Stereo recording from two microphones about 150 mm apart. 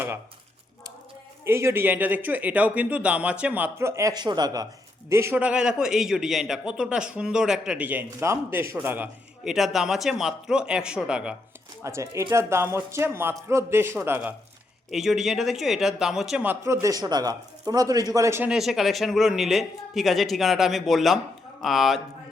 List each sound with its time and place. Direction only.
1.5 s speech: 15° right (ahead or behind)
11.8 s speech: 20° right (ahead or behind)
14.8 s speech: centre (ahead or behind); by 18.4 s 20° right (ahead or behind)
18.4 s a man's voice: 5° right (ahead or behind)